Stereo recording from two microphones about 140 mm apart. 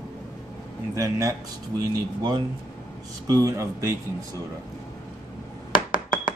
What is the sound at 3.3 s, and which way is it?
Speech, 25° right (ahead or behind).